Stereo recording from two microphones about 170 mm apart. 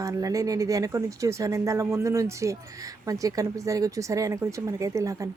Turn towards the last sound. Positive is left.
turn(degrees=-20)  # may be behind; listen again after turning